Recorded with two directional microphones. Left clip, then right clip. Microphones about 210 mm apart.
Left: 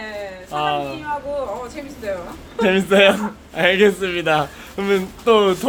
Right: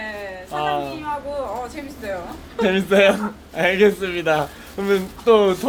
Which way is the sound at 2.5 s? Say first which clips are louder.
Left 2 dB; 5° left (ahead or behind).